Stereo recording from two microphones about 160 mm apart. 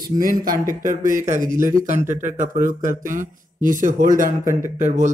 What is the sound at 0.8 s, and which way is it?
Speech, 55° right (ahead or behind).